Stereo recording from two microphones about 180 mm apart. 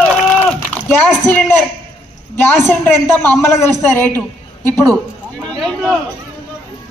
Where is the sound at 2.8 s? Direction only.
10° left (ahead or behind).